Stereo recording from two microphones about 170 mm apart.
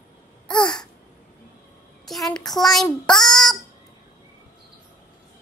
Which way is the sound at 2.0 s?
Centre (ahead or behind).